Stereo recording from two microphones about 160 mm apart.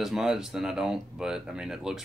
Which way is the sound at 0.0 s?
Centre (ahead or behind).